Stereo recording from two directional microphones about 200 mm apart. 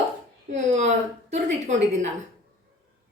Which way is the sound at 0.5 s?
35° right (ahead or behind).